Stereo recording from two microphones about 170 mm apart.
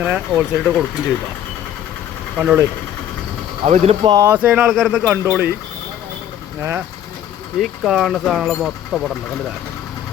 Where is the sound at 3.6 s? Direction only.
40° right (ahead or behind).